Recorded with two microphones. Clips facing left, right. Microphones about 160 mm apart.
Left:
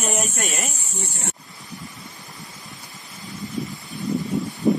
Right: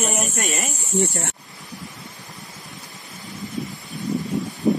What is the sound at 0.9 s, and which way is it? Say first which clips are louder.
Speech: right 14 dB; 70° right (ahead or behind).